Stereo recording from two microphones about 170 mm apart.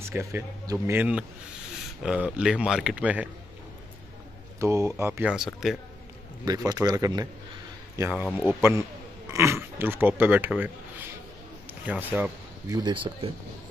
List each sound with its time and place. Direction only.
0.0 s speech: 15° right (ahead or behind)
4.6 s speech: 15° right (ahead or behind)
5.3 s speech: centre (ahead or behind)
6.4 s speech: 25° right (ahead or behind)
7.9 s speech: 10° right (ahead or behind)
9.3 s speech: 15° right (ahead or behind)
12.7 s speech: 25° right (ahead or behind)